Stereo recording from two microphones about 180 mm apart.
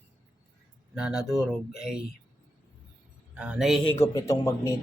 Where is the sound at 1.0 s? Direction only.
5° right (ahead or behind).